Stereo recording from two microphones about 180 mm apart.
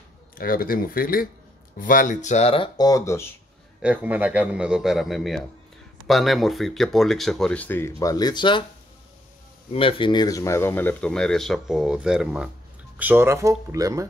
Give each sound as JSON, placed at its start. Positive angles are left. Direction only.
{"t": 0.4, "sound": "speech", "side_deg": 55}
{"t": 3.8, "sound": "speech", "side_deg": -10}
{"t": 9.7, "sound": "speech", "side_deg": 30}